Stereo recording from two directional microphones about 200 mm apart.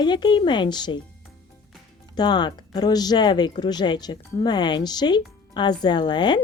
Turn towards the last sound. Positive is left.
turn(degrees=20)  # may be behind; listen again after turning